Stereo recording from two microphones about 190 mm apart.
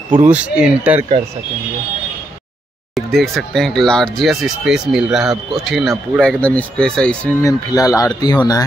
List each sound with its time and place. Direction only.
0.1 s speech: 5° right (ahead or behind)
2.9 s speech: centre (ahead or behind)
7.4 s speech: 20° left (ahead or behind)